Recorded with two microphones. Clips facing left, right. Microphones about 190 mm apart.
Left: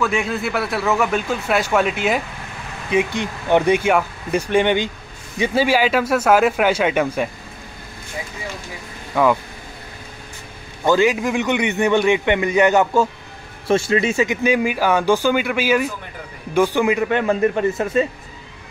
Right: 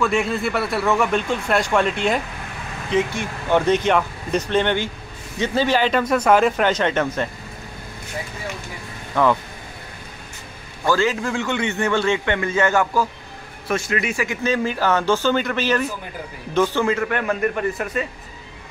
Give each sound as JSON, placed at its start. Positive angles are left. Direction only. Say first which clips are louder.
{"t": 0.0, "sound": "a man's voice", "louder": "right 1 dB", "side_deg": 0}
{"t": 9.1, "sound": "speech", "louder": "left 2 dB", "side_deg": 10}
{"t": 10.9, "sound": "a man's voice", "louder": "left 4 dB", "side_deg": 15}